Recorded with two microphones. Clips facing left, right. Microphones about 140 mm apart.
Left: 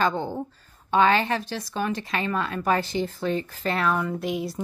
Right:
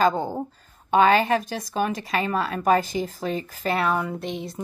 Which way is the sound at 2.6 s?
45° right (ahead or behind).